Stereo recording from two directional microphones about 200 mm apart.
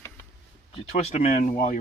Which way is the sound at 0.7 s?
35° left (ahead or behind).